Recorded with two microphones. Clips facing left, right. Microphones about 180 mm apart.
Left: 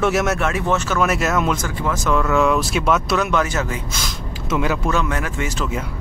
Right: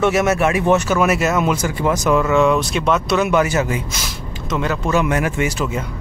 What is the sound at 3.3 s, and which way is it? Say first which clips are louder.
Speech: right 4 dB; 10° right (ahead or behind).